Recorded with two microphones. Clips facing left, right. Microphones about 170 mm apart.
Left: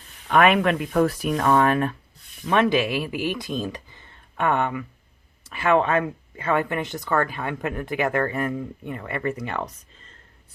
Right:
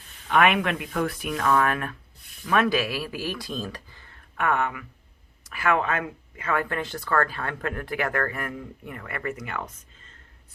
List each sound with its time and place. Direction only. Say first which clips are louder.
0.3 s speech: left 3 dB; 40° left (ahead or behind)